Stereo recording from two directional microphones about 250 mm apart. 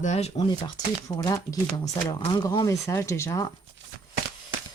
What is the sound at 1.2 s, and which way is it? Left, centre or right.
Speech, centre.